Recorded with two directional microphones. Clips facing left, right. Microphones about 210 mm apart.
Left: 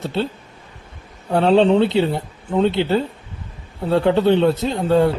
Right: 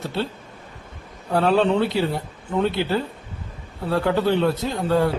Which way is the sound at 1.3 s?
25° left (ahead or behind).